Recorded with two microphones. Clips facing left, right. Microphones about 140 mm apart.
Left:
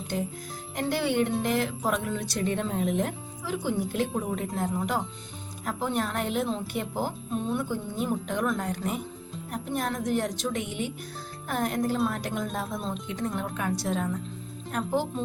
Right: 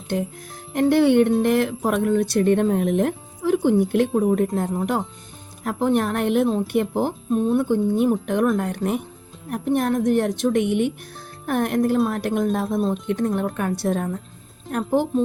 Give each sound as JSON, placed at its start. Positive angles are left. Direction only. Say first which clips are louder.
{"t": 0.7, "sound": "speech", "louder": "right 11 dB", "side_deg": -55}
{"t": 4.1, "sound": "speech", "louder": "right 11 dB", "side_deg": -50}